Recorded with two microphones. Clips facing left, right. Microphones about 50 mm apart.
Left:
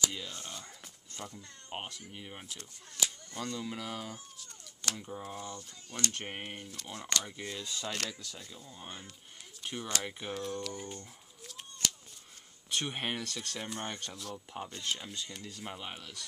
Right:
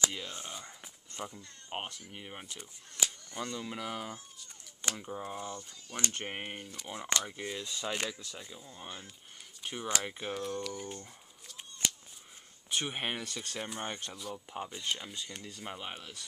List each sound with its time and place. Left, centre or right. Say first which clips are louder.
0.0 s speech: right 1 dB; right
5.9 s speech: even; right
6.2 s speech: right 2 dB; centre
12.6 s speech: even; centre